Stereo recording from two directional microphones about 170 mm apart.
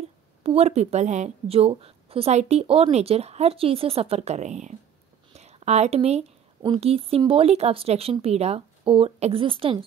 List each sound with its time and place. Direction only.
0.4 s a woman's voice: 35° right (ahead or behind)
5.3 s a sound: 40° right (ahead or behind)
6.8 s a woman's voice: 35° right (ahead or behind)